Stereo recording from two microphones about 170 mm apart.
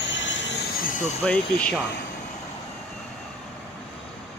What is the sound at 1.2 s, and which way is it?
Speech, 5° left (ahead or behind).